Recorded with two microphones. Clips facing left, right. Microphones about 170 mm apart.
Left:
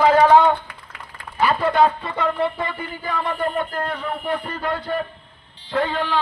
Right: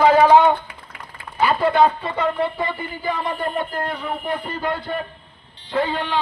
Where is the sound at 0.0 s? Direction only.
5° right (ahead or behind).